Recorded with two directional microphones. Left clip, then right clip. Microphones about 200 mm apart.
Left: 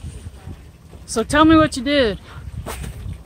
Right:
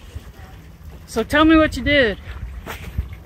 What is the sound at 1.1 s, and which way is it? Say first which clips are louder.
Speech: left 1 dB; 20° left (ahead or behind).